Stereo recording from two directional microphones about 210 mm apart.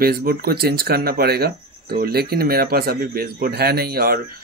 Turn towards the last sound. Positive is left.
turn(degrees=-45)  # may be behind; listen again after turning